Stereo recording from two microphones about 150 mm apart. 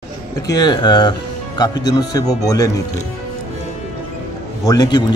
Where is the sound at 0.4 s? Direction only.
25° left (ahead or behind).